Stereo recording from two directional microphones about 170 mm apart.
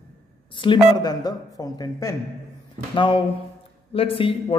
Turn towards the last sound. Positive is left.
turn(degrees=30)  # may be behind; listen again after turning